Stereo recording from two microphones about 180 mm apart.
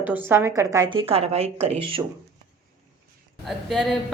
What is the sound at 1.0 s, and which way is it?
Speech, 35° right (ahead or behind).